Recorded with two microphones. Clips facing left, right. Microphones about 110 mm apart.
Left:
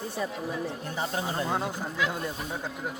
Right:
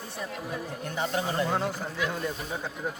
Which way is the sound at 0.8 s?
30° left (ahead or behind).